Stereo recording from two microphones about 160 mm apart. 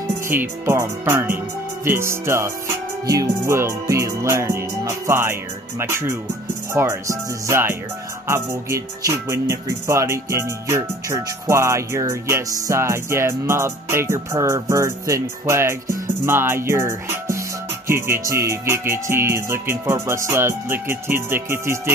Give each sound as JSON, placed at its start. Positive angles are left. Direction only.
{"t": 0.3, "sound": "speech", "side_deg": -15}